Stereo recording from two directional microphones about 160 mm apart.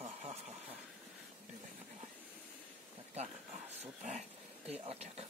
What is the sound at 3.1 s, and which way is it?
Speech, 45° right (ahead or behind).